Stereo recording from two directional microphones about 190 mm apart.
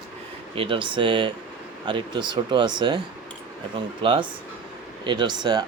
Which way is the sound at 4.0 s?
25° right (ahead or behind).